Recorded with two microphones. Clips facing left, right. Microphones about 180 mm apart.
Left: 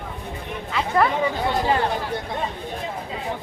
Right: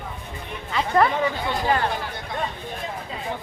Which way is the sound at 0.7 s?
Centre (ahead or behind).